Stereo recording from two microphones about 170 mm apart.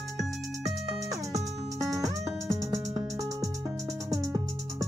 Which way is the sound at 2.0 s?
20° right (ahead or behind).